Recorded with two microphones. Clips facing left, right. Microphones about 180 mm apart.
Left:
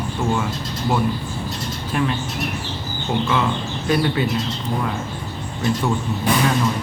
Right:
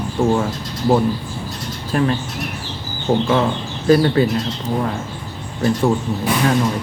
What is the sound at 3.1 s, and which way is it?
Speech, 35° right (ahead or behind).